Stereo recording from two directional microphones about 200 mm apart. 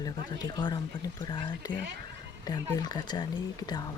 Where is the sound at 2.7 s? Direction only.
20° left (ahead or behind).